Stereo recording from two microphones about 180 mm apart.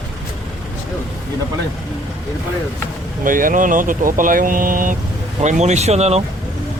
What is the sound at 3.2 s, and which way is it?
Speech, 50° right (ahead or behind).